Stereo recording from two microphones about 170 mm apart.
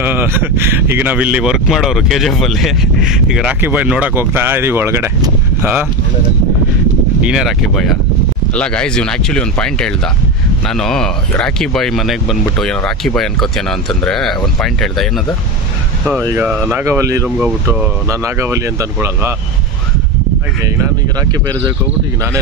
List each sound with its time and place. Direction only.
0.0 s speech: 10° right (ahead or behind)
7.2 s speech: 5° right (ahead or behind)
16.7 s speech: 15° right (ahead or behind)
17.4 s speech: 5° right (ahead or behind)
21.2 s speech: 25° right (ahead or behind)